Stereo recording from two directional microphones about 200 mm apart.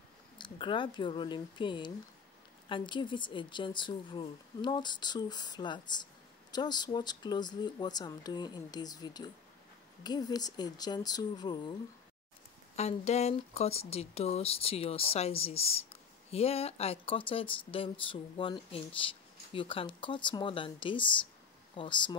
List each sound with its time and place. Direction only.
0.4 s speech: 25° left (ahead or behind)
12.7 s speech: 30° left (ahead or behind)